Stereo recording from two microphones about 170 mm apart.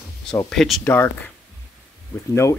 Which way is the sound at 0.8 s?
10° left (ahead or behind).